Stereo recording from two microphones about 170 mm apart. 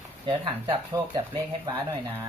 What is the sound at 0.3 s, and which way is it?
Speech, 35° right (ahead or behind).